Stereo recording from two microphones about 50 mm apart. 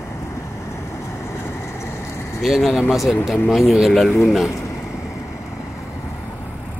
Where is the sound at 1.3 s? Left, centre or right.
Left.